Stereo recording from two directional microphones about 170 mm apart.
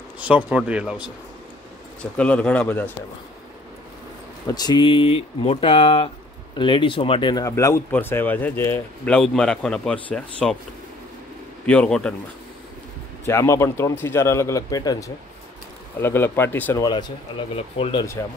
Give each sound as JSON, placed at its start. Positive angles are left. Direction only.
{"t": 0.5, "sound": "speech", "side_deg": -5}
{"t": 2.0, "sound": "speech", "side_deg": 5}
{"t": 4.5, "sound": "speech", "side_deg": 25}
{"t": 11.6, "sound": "speech", "side_deg": 5}
{"t": 13.2, "sound": "speech", "side_deg": 15}
{"t": 16.8, "sound": "speech", "side_deg": 30}